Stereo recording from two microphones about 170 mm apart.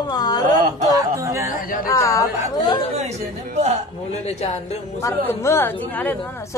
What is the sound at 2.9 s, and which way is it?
Speech, 40° right (ahead or behind).